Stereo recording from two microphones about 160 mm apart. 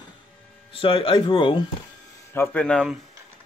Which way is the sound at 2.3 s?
10° left (ahead or behind).